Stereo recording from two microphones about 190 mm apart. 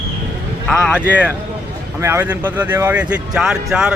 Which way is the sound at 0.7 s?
Centre (ahead or behind).